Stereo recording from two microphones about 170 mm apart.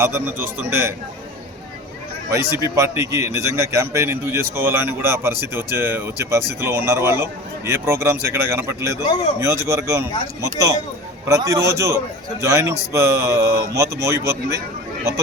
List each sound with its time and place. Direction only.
0.0 s a man's voice: 15° right (ahead or behind)
2.3 s a man's voice: 15° right (ahead or behind)